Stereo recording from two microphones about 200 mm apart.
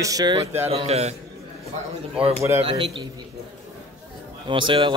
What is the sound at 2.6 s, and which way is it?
Speech, 30° right (ahead or behind).